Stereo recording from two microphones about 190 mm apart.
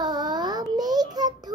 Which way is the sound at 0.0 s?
20° right (ahead or behind).